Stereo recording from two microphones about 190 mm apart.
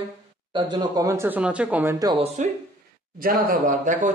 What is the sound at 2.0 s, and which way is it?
Speech, 25° right (ahead or behind).